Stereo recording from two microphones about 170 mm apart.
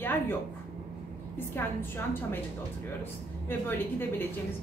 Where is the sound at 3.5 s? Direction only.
10° left (ahead or behind).